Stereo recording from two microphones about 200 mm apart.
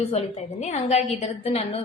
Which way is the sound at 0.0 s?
30° left (ahead or behind).